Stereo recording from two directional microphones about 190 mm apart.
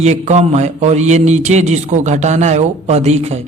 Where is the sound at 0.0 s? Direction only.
35° right (ahead or behind).